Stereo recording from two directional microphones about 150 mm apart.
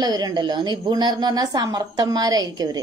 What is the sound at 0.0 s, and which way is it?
A woman's voice, 25° right (ahead or behind).